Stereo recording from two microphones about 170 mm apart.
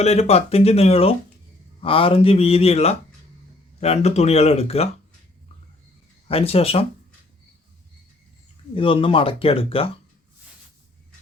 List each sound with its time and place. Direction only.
0.0 s speech: 40° left (ahead or behind)
6.2 s speech: 35° left (ahead or behind)
8.7 s speech: 30° left (ahead or behind)